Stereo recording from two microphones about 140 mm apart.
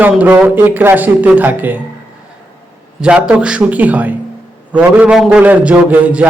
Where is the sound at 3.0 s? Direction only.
5° right (ahead or behind).